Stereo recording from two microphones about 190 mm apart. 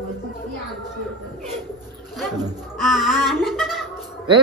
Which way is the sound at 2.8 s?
Centre (ahead or behind).